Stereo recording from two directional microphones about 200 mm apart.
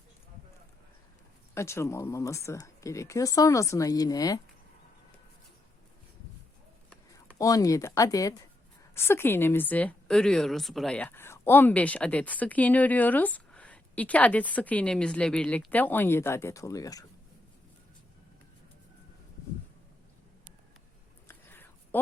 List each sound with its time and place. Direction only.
1.5 s a woman's voice: 15° left (ahead or behind)
7.3 s a woman's voice: 15° left (ahead or behind)
21.2 s whispering: 10° left (ahead or behind)